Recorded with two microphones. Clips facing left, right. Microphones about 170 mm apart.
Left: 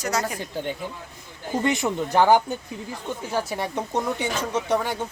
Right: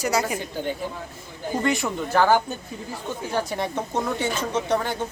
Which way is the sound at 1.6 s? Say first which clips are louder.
Left 1 dB; 20° left (ahead or behind).